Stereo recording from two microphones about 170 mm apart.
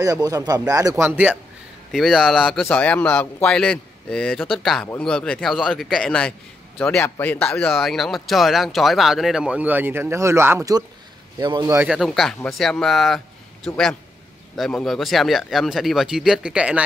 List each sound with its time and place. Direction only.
0.0 s speech: 20° right (ahead or behind)
11.9 s speech: centre (ahead or behind)